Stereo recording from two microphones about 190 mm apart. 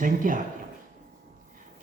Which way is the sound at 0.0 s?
45° right (ahead or behind).